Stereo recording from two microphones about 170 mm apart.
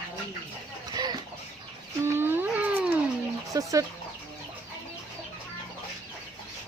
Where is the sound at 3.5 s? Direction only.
20° right (ahead or behind).